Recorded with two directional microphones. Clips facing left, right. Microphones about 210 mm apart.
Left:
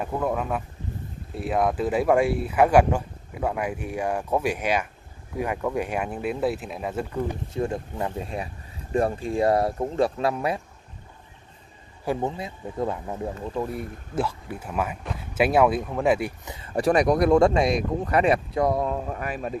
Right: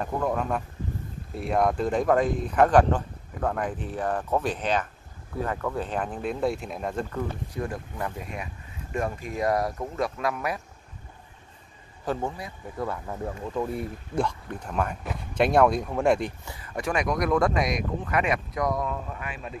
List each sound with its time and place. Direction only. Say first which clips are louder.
0.0 s speech: left 1 dB; 5° left (ahead or behind)
7.5 s speech: left 7 dB; 25° left (ahead or behind)
12.0 s speech: left 3 dB; 15° left (ahead or behind)
13.6 s speech: right 2 dB; 5° left (ahead or behind)
16.4 s speech: left 8 dB; 25° left (ahead or behind)
19.0 s speech: left 7 dB; 45° left (ahead or behind)